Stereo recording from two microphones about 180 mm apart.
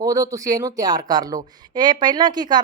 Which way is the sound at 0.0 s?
20° right (ahead or behind).